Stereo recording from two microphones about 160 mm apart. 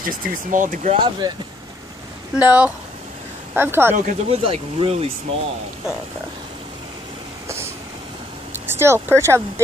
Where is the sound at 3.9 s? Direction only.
55° right (ahead or behind).